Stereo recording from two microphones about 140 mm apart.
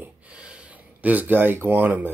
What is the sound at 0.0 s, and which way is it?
Speech, 10° right (ahead or behind).